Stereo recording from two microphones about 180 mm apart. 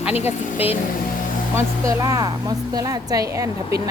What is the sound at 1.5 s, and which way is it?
Speech, 20° right (ahead or behind).